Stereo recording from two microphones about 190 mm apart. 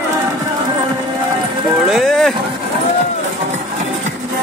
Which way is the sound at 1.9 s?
Centre (ahead or behind).